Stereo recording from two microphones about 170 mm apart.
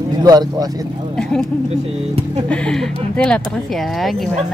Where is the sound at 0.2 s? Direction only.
20° right (ahead or behind).